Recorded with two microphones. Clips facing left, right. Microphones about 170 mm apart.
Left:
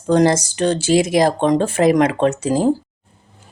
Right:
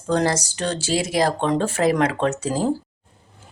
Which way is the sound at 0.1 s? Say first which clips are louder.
Left 6 dB; 20° left (ahead or behind).